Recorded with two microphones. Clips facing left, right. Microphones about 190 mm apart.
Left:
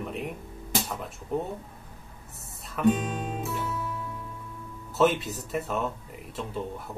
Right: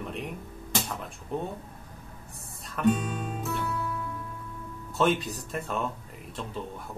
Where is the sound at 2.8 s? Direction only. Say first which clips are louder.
Left 1 dB; 20° left (ahead or behind).